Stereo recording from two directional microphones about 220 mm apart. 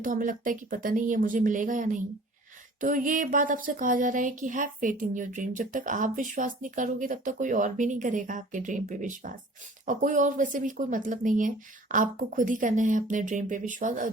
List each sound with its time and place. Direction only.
0.0 s speech: 35° right (ahead or behind)